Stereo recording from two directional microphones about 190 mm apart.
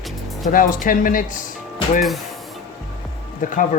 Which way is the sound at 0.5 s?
45° left (ahead or behind).